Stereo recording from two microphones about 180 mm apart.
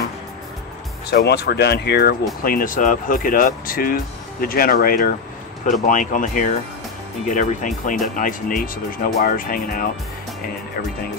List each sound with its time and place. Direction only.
1.1 s speech: 65° left (ahead or behind)
2.4 s speech: 50° left (ahead or behind)